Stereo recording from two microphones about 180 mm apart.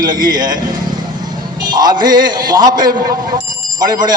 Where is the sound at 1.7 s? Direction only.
20° right (ahead or behind).